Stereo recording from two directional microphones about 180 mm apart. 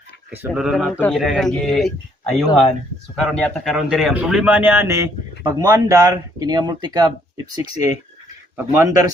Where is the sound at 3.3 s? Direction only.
5° left (ahead or behind); by 7.1 s 20° right (ahead or behind).